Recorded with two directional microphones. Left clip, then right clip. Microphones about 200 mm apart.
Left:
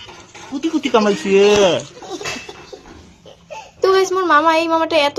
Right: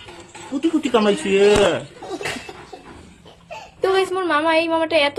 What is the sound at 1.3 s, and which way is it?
Speech, 20° left (ahead or behind).